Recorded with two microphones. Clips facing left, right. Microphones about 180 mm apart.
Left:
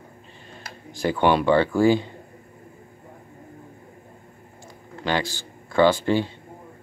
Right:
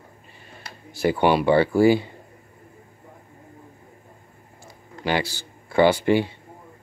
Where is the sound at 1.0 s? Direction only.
10° right (ahead or behind).